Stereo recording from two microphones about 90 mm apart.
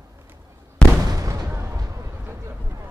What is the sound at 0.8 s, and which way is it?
Fireworks, 10° left (ahead or behind).